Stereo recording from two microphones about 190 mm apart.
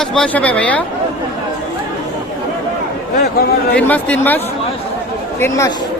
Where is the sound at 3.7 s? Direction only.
10° left (ahead or behind).